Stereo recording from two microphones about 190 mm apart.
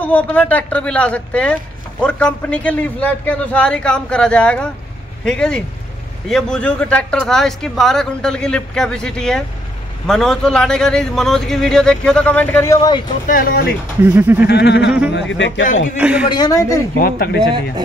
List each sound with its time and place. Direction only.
0.1 s speech: 10° left (ahead or behind)
13.3 s speech: 50° left (ahead or behind)
14.0 s speech: 10° right (ahead or behind)
14.5 s a sound: 65° left (ahead or behind)
15.1 s a man's voice: 70° left (ahead or behind)
16.0 s speech: 5° right (ahead or behind)
16.3 s a woman's voice: 20° left (ahead or behind)
17.0 s speech: 50° left (ahead or behind)